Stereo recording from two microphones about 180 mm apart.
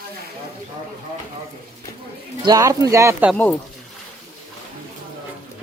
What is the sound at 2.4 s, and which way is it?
Speech, 20° right (ahead or behind).